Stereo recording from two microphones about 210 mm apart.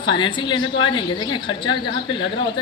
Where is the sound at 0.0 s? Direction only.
20° left (ahead or behind).